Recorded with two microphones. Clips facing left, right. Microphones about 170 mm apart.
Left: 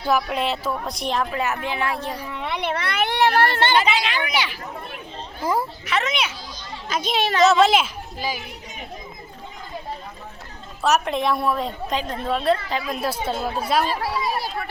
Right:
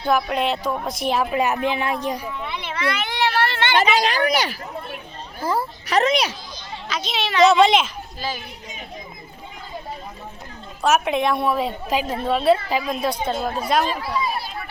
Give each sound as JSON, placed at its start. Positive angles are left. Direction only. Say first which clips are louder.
{"t": 0.0, "sound": "a woman's voice", "louder": "right 1 dB", "side_deg": 5}
{"t": 1.3, "sound": "speech", "louder": "right 4 dB", "side_deg": -15}
{"t": 2.3, "sound": "speech", "louder": "left 4 dB", "side_deg": 70}
{"t": 3.8, "sound": "speech", "louder": "right 3 dB", "side_deg": -40}
{"t": 5.4, "sound": "a sound", "louder": "even", "side_deg": 15}
{"t": 5.8, "sound": "speech", "louder": "right 5 dB", "side_deg": -35}
{"t": 6.8, "sound": "a child's voice", "louder": "left 4 dB", "side_deg": 50}
{"t": 7.4, "sound": "a woman's voice", "louder": "right 2 dB", "side_deg": 0}
{"t": 10.8, "sound": "a woman's voice", "louder": "right 1 dB", "side_deg": 0}